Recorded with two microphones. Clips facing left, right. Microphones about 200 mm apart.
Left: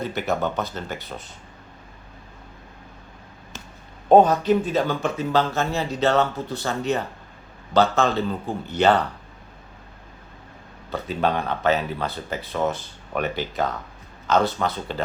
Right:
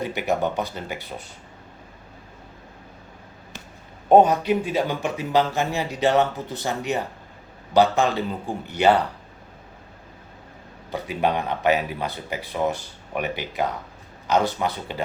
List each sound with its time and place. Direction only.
0.0 s speech: 15° right (ahead or behind)
4.1 s speech: 15° right (ahead or behind)
10.9 s speech: 15° right (ahead or behind)